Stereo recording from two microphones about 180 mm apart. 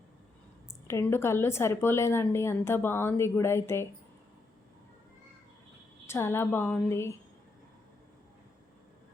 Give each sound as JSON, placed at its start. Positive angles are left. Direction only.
{"t": 0.9, "sound": "a woman's voice", "side_deg": 15}
{"t": 6.1, "sound": "a woman's voice", "side_deg": 15}